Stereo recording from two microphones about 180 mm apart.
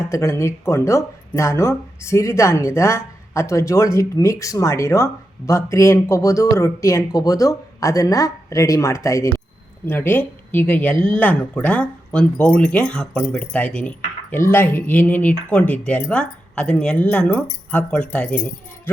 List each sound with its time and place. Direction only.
0.1 s speech: 15° left (ahead or behind)